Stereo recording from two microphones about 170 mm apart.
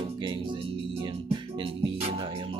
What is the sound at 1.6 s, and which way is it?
Music, 35° right (ahead or behind).